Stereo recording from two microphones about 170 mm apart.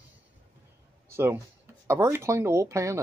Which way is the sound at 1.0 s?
15° right (ahead or behind).